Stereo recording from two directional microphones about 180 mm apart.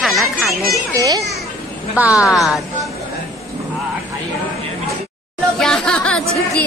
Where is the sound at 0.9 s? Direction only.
20° right (ahead or behind).